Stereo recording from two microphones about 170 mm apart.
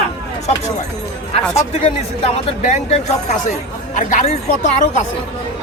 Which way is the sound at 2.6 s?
40° left (ahead or behind).